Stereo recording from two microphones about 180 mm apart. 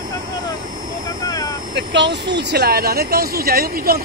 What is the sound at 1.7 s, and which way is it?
Speech, 80° right.